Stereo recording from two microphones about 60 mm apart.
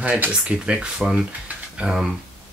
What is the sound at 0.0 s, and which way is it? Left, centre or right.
Speech, right.